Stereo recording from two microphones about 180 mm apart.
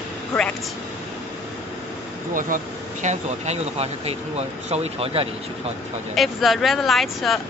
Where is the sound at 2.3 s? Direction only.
45° right (ahead or behind).